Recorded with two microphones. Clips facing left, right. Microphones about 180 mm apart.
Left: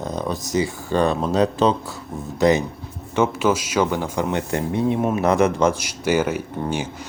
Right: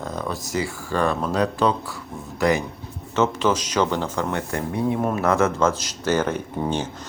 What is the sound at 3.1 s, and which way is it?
Speech, 10° left (ahead or behind).